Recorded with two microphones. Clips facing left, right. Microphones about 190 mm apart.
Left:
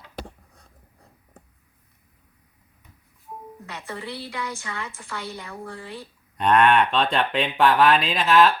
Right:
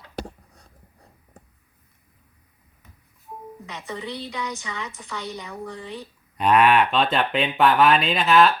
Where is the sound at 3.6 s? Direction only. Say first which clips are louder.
Right 1 dB; 15° right (ahead or behind).